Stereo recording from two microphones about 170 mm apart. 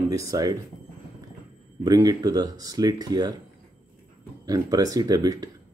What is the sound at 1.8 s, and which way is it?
Speech, 25° right (ahead or behind).